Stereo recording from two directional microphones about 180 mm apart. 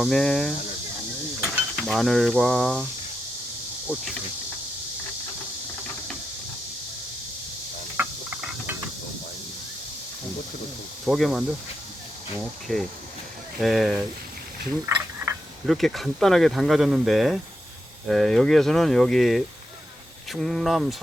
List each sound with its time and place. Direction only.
0.0 s speech: centre (ahead or behind)
1.4 s mechanisms: centre (ahead or behind)
2.3 s speech: centre (ahead or behind)
3.9 s cricket: 10° right (ahead or behind)
7.9 s a sound: 10° right (ahead or behind)
11.0 s speech: centre (ahead or behind)
14.8 s frog: 15° right (ahead or behind)
15.6 s speech: centre (ahead or behind)